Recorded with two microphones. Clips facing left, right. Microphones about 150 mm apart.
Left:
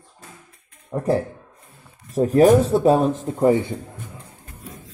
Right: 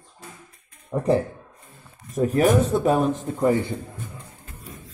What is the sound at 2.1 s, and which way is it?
Speech, 35° left (ahead or behind).